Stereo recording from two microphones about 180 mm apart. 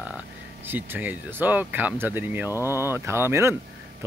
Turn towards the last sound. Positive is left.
turn(degrees=-15)  # may be behind; listen again after turning